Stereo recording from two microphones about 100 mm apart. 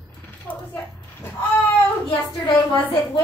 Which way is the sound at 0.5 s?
10° left (ahead or behind).